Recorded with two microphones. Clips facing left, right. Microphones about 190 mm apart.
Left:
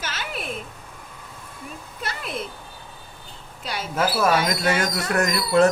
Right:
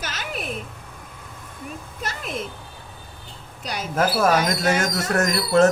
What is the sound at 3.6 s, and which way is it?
Speech, 45° right (ahead or behind).